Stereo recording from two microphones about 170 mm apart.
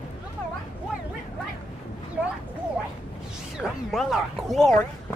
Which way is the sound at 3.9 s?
Centre (ahead or behind).